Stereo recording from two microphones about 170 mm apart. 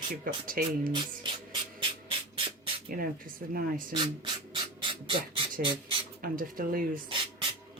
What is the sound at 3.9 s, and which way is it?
Speech, 25° right (ahead or behind).